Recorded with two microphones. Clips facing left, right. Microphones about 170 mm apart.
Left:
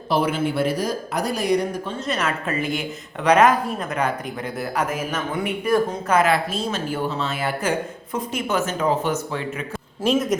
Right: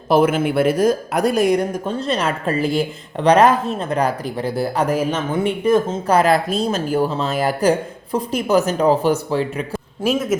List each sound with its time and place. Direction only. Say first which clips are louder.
0.1 s speech: right 6 dB; 50° right (ahead or behind)
2.0 s a woman's voice: right 3 dB; 30° right (ahead or behind)
10.0 s speech: right 1 dB; 5° right (ahead or behind)